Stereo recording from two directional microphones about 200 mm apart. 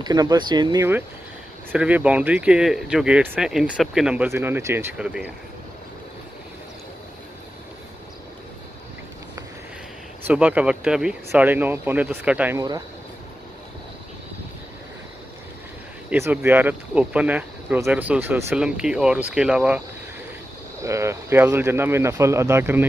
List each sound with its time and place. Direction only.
0.0 s speech: 20° right (ahead or behind)
1.7 s speech: 5° right (ahead or behind)
10.2 s speech: 5° right (ahead or behind)
16.1 s speech: 10° right (ahead or behind)
20.8 s speech: 15° right (ahead or behind)